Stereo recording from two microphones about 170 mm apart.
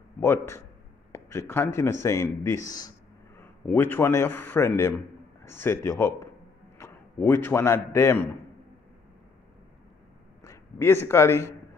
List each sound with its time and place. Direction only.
0.2 s a man's voice: 15° left (ahead or behind)
10.4 s a man's voice: 15° left (ahead or behind)